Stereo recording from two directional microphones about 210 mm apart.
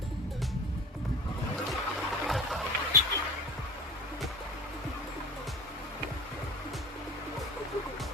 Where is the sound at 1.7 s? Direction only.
Centre (ahead or behind).